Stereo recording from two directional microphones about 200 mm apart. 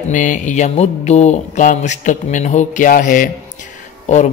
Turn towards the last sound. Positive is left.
turn(degrees=35)  # may be behind; listen again after turning